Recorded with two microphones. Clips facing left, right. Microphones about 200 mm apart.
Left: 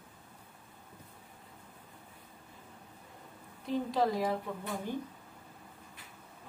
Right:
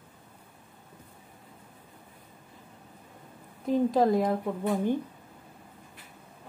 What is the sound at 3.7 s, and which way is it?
Speech, 45° right (ahead or behind).